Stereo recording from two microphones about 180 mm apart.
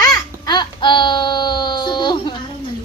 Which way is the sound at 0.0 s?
25° left (ahead or behind).